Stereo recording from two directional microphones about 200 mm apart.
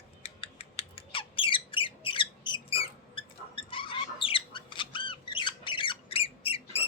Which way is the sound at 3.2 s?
25° left (ahead or behind).